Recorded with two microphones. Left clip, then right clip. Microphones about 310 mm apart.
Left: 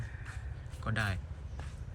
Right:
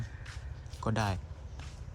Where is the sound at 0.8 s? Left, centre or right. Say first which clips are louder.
Right 2 dB; centre.